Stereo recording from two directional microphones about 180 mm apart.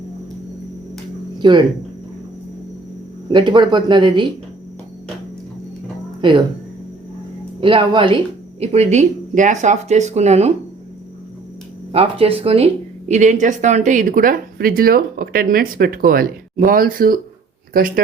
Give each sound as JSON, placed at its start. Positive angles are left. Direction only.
{"t": 1.4, "sound": "speech", "side_deg": -25}
{"t": 3.3, "sound": "speech", "side_deg": -25}
{"t": 6.2, "sound": "speech", "side_deg": -25}
{"t": 7.6, "sound": "speech", "side_deg": -30}
{"t": 11.9, "sound": "a woman's voice", "side_deg": -30}